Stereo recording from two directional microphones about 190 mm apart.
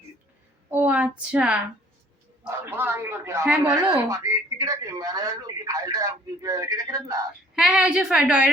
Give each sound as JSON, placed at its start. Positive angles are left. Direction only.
{"t": 0.7, "sound": "a man's voice", "side_deg": -10}
{"t": 7.5, "sound": "a woman's voice", "side_deg": -5}